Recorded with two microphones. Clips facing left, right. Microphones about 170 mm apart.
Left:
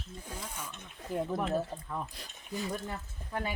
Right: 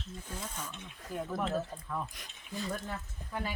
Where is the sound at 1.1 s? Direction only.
25° left (ahead or behind).